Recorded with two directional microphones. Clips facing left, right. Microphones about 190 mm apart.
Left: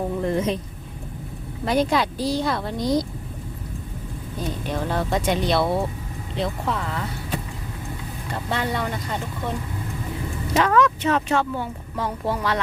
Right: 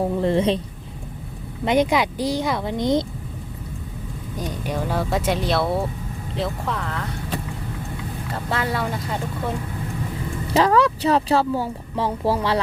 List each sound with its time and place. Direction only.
0.2 s speech: 30° right (ahead or behind)
1.6 s a woman's voice: 20° right (ahead or behind)
4.4 s speech: 10° right (ahead or behind)
8.3 s speech: centre (ahead or behind)
10.5 s speech: 35° right (ahead or behind)